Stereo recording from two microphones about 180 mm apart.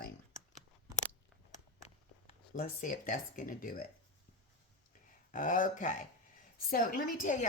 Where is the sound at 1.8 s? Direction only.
40° left (ahead or behind).